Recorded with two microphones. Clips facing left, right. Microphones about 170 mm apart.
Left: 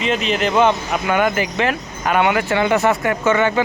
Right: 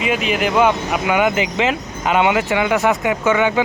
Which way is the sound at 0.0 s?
10° right (ahead or behind).